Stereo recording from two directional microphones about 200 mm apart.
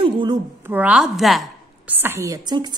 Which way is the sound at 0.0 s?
25° right (ahead or behind).